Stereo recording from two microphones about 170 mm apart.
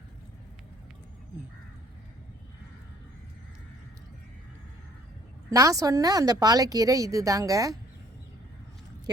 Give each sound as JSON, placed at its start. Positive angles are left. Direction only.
{"t": 5.5, "sound": "speech", "side_deg": -20}